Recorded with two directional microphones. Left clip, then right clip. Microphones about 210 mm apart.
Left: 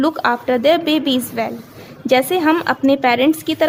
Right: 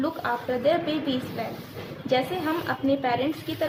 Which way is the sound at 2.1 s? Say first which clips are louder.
Left 11 dB; 50° left (ahead or behind).